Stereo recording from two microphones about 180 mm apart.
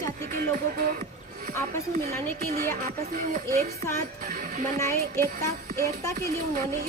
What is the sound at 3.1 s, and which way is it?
Speech, 50° right (ahead or behind).